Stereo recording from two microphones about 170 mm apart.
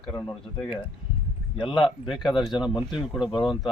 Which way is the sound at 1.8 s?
Centre (ahead or behind).